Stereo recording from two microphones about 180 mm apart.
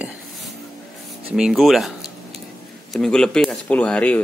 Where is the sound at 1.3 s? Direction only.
Centre (ahead or behind).